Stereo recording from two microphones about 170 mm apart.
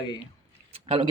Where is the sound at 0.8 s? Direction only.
35° right (ahead or behind).